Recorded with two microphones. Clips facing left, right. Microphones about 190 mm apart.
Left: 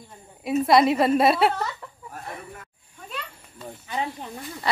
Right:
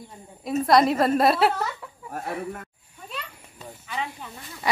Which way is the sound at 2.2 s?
55° right (ahead or behind).